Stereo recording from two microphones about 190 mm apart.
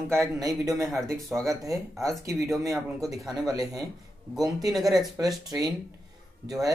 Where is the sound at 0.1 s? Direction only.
15° right (ahead or behind).